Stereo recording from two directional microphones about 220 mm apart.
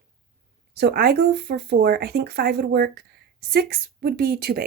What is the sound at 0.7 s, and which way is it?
Speech, 45° right (ahead or behind).